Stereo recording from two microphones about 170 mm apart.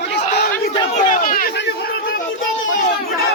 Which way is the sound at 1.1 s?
55° left (ahead or behind).